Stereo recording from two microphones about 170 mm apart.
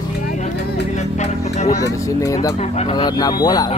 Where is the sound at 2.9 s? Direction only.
25° left (ahead or behind).